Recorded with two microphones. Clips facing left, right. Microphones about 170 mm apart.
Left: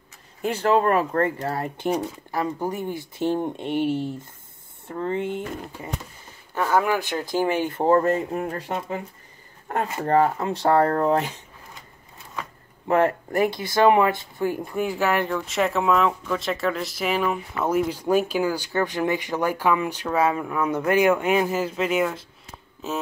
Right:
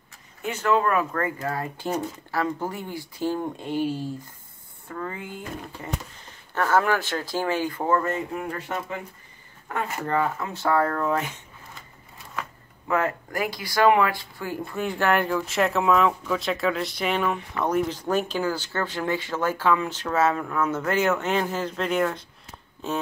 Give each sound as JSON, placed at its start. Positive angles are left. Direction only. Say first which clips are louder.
{"t": 0.4, "sound": "speech", "louder": "left 3 dB", "side_deg": 30}
{"t": 1.9, "sound": "speech", "louder": "left 4 dB", "side_deg": 15}
{"t": 6.5, "sound": "speech", "louder": "even", "side_deg": 10}
{"t": 12.8, "sound": "speech", "louder": "left 5 dB", "side_deg": 30}
{"t": 14.9, "sound": "speech", "louder": "right 2 dB", "side_deg": 5}